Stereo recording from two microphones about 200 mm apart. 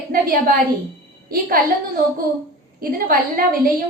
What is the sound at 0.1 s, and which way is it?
Speech, 45° right (ahead or behind).